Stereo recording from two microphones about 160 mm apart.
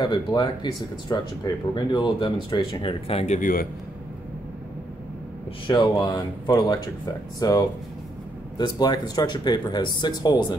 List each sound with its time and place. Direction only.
0.0 s speech: 30° left (ahead or behind)
3.3 s a man's voice: 60° left (ahead or behind)
5.7 s speech: 25° left (ahead or behind)